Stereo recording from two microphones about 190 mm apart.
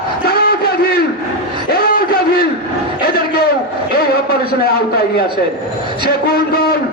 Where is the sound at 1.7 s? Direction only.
50° left (ahead or behind).